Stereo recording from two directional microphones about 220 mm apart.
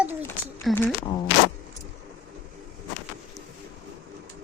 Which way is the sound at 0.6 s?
5° left (ahead or behind).